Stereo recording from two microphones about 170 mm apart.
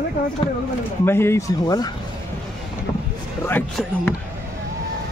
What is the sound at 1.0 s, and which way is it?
Speech, 15° left (ahead or behind).